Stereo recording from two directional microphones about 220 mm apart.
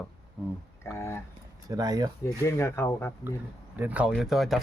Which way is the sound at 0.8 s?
10° left (ahead or behind).